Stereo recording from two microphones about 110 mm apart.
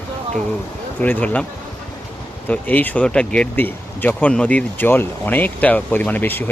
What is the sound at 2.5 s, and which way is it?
Speech, 15° left (ahead or behind).